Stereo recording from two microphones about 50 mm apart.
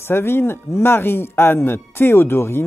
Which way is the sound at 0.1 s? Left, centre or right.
Left.